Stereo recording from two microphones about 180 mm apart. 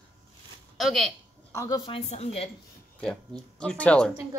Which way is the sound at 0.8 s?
Centre (ahead or behind).